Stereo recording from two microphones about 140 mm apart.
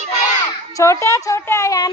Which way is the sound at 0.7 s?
20° left (ahead or behind).